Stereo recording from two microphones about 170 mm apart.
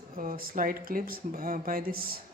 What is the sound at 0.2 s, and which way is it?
Speech, 55° right (ahead or behind).